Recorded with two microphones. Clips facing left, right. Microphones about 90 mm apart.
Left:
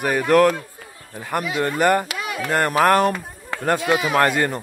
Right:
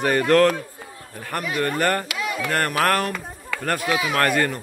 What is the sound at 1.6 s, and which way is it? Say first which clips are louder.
A man's voice: left 4 dB; 15° left (ahead or behind).